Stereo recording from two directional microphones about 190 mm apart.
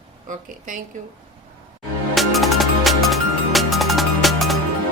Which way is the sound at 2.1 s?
Centre (ahead or behind).